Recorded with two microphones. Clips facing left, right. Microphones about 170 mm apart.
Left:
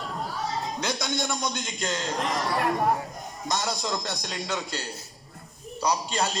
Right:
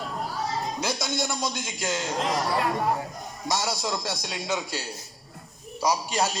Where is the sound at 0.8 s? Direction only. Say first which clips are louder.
Left 1 dB; 5° right (ahead or behind).